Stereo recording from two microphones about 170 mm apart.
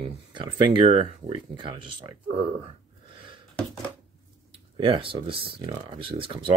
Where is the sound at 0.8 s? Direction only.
35° right (ahead or behind).